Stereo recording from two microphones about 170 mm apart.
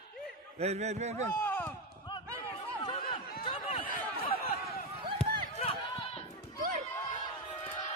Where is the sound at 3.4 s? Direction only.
35° left (ahead or behind).